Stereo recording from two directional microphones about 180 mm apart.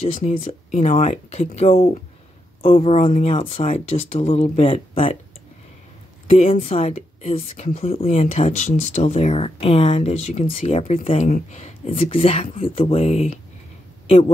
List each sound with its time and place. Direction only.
0.0 s speech: 35° left (ahead or behind)
6.2 s a woman's voice: 35° left (ahead or behind)